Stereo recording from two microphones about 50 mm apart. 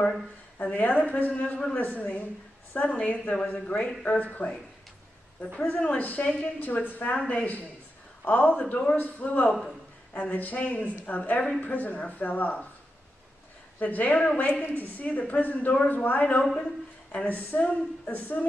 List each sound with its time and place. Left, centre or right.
0.6 s a woman's voice: left
5.9 s speech: left
9.5 s a man's voice: centre
10.1 s speech: left
13.7 s speech: left